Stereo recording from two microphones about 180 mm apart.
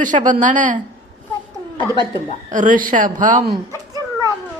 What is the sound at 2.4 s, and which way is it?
Speech, 45° right (ahead or behind).